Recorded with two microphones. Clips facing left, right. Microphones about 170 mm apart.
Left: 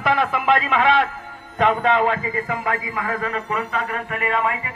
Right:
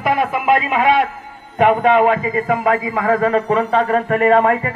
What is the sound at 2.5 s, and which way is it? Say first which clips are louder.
Speech: right 10 dB; 90° right.